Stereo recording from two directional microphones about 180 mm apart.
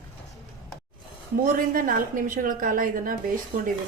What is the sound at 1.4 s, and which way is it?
Speech, 50° right (ahead or behind).